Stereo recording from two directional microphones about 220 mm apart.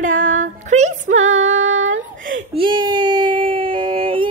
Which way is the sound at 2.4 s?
20° right (ahead or behind).